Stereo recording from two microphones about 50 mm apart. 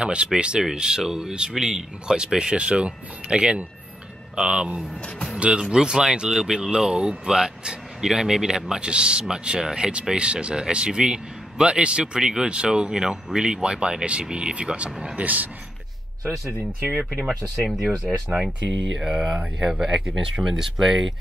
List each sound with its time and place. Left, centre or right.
0.0 s speech: right
15.1 s a man's voice: right
17.3 s speech: centre